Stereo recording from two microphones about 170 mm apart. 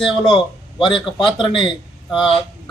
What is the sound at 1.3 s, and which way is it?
Speech, 30° left (ahead or behind).